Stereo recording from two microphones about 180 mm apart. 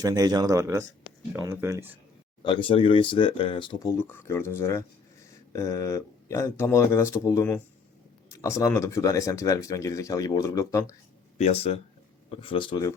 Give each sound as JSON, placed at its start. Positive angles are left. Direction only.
{"t": 0.0, "sound": "speech", "side_deg": -20}
{"t": 2.4, "sound": "speech", "side_deg": 25}
{"t": 3.9, "sound": "speech", "side_deg": 15}
{"t": 11.3, "sound": "speech", "side_deg": 35}